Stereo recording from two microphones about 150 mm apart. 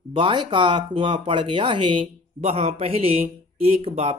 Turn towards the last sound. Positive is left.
turn(degrees=-45)  # may be behind; listen again after turning